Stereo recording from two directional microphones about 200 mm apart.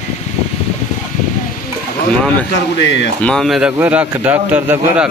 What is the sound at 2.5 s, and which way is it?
Speech, 60° left (ahead or behind).